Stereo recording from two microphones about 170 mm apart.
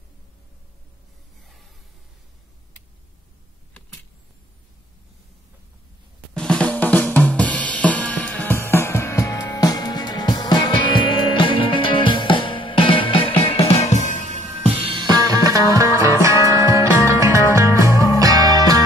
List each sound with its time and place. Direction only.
6.3 s drum kit: 5° left (ahead or behind); by 14.3 s 50° left (ahead or behind)
14.6 s music: 30° right (ahead or behind)